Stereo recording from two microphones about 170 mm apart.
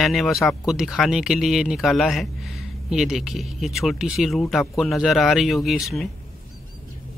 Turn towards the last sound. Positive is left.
turn(degrees=0)  # may be behind; listen again after turning